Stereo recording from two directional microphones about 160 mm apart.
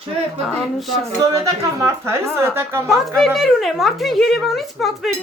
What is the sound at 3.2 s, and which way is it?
A woman's voice, centre (ahead or behind).